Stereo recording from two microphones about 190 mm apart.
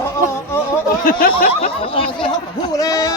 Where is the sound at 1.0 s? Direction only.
50° left (ahead or behind).